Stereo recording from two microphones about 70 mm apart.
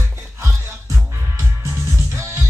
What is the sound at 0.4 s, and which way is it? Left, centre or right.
Music, right.